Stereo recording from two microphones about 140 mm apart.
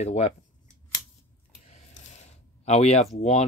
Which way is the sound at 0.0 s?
50° left (ahead or behind).